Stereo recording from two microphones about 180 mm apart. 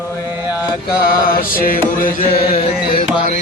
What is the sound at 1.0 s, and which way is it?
Mantra, 55° left (ahead or behind).